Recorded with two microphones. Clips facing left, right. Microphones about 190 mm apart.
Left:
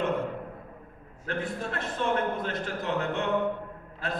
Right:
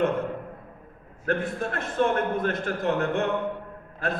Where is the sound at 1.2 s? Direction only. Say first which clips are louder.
Right 5 dB; 50° right (ahead or behind).